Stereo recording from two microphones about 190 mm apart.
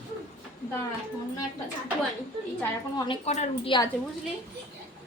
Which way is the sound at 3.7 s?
25° left (ahead or behind).